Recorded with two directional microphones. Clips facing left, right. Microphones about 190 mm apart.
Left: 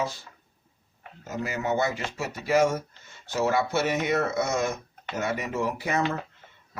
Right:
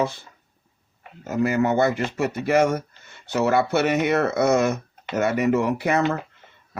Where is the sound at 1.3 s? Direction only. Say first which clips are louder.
Right 8 dB; 60° right (ahead or behind).